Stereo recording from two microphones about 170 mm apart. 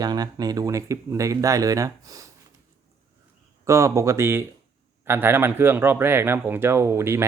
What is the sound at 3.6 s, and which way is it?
Speech, 15° right (ahead or behind).